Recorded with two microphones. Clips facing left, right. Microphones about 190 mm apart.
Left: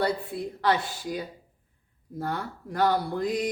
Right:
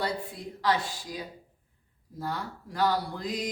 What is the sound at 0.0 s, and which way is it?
Speech, 60° left (ahead or behind).